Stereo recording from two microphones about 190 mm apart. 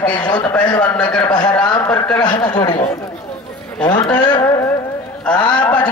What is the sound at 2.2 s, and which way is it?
Speech, 25° left (ahead or behind).